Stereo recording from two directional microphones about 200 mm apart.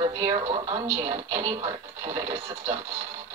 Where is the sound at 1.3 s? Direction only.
30° right (ahead or behind).